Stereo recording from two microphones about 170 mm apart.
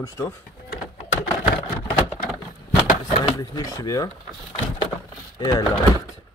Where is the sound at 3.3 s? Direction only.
20° left (ahead or behind).